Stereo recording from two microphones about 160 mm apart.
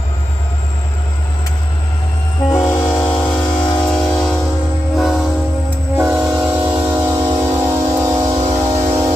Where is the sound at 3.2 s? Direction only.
5° left (ahead or behind).